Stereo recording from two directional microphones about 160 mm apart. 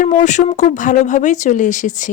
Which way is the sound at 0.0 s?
50° left (ahead or behind).